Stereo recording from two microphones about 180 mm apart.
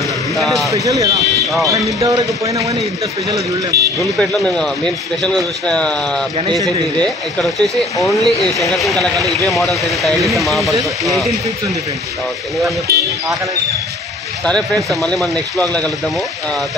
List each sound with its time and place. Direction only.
0.4 s speech: centre (ahead or behind)
0.7 s speech: 20° right (ahead or behind)
3.7 s speech: 60° right (ahead or behind)
4.2 s speech: 5° left (ahead or behind)
12.9 s speech: 60° right (ahead or behind)
14.9 s speech: centre (ahead or behind)